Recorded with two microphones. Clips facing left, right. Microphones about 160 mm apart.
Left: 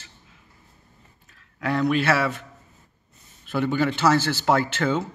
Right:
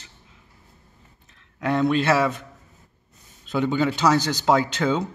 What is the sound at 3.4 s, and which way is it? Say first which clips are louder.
A man's voice: right 1 dB; 20° right (ahead or behind).